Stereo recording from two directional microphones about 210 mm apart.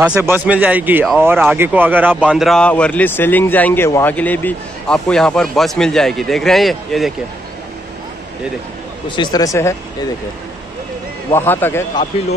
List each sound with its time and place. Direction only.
0.0 s speech: 10° right (ahead or behind)
9.1 s speech: 20° left (ahead or behind)
11.3 s speech: 10° left (ahead or behind)